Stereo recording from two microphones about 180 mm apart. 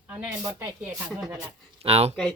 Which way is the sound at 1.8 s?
35° right (ahead or behind).